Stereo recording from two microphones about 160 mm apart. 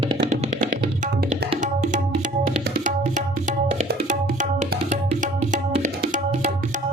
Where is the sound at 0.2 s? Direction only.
80° right.